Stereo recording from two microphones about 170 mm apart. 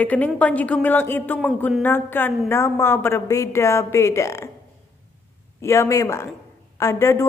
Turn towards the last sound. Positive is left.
turn(degrees=15)  # may be behind; listen again after turning